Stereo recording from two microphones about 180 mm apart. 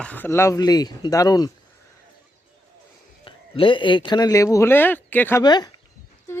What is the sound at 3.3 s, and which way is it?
Speech, 30° left (ahead or behind).